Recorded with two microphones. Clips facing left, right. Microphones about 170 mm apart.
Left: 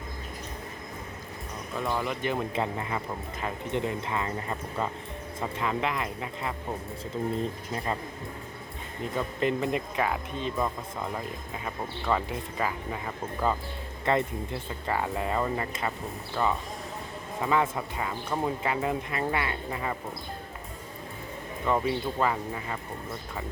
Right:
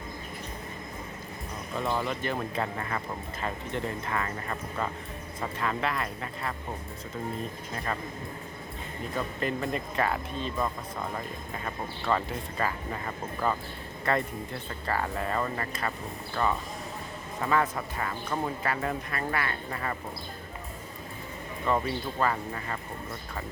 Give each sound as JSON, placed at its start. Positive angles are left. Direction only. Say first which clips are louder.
{"t": 1.7, "sound": "speech", "louder": "even", "side_deg": 0}
{"t": 2.0, "sound": "speech", "louder": "left 2 dB", "side_deg": 15}
{"t": 9.1, "sound": "speech", "louder": "left 3 dB", "side_deg": 20}
{"t": 14.0, "sound": "speech", "louder": "left 2 dB", "side_deg": 20}
{"t": 16.3, "sound": "speech", "louder": "left 1 dB", "side_deg": 5}
{"t": 21.8, "sound": "speech", "louder": "left 2 dB", "side_deg": 15}